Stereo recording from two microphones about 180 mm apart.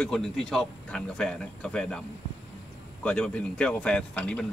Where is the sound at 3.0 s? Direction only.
5° left (ahead or behind).